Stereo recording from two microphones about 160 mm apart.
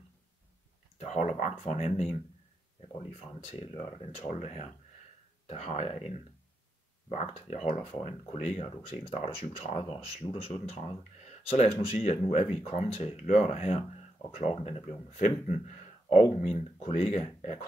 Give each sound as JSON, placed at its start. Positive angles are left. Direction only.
{"t": 0.9, "sound": "speech", "side_deg": 45}